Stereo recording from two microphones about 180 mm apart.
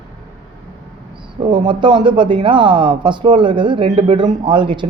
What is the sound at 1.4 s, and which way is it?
Speech, 25° right (ahead or behind).